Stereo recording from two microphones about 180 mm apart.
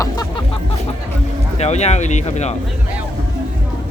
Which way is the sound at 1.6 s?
40° left (ahead or behind).